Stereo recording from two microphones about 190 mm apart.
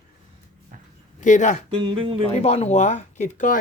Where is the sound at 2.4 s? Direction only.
35° left (ahead or behind).